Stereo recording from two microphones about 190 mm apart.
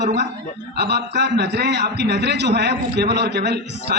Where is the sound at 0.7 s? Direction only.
60° right (ahead or behind).